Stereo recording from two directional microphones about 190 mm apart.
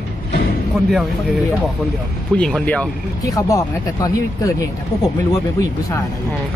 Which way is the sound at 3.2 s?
15° left (ahead or behind).